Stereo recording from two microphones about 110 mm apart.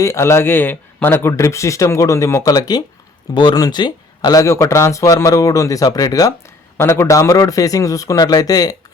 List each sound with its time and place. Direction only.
0.0 s speech: 25° left (ahead or behind)